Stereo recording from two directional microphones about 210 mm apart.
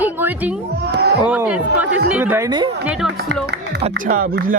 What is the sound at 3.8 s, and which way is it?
Speech, 40° right (ahead or behind).